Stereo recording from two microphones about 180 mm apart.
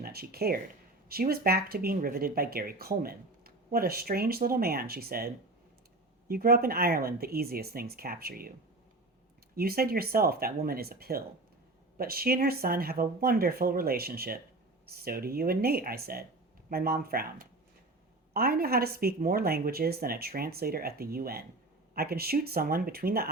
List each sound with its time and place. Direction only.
0.0 s speech: 60° right (ahead or behind)
9.6 s speech: 55° right (ahead or behind)